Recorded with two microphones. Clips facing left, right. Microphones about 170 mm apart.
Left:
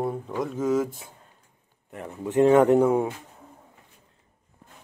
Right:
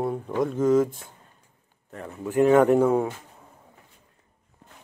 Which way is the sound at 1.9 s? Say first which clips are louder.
Left 1 dB; 20° left (ahead or behind).